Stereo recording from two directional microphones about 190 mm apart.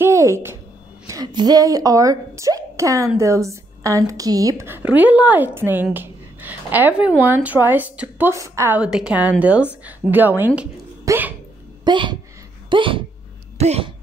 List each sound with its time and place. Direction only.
0.0 s a woman's voice: 15° right (ahead or behind)
9.8 s a sound: 10° right (ahead or behind)
11.8 s speech: 25° right (ahead or behind)